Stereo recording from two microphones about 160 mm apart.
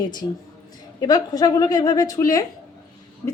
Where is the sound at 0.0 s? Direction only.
25° left (ahead or behind).